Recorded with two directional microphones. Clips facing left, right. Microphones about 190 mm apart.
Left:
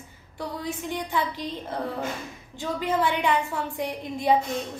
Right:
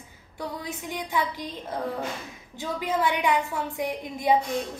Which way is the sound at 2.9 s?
15° right (ahead or behind).